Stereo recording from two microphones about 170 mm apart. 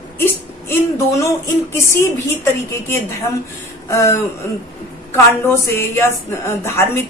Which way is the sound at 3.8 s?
15° left (ahead or behind).